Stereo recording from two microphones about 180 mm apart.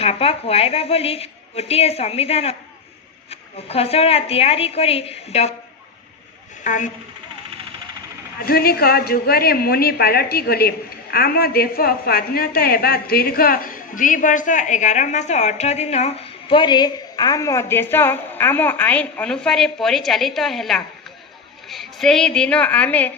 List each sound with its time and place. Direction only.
0.0 s a woman's voice: 35° left (ahead or behind)
6.7 s a woman's voice: 45° left (ahead or behind)
8.4 s a woman's voice: 55° left (ahead or behind); by 23.1 s 10° left (ahead or behind)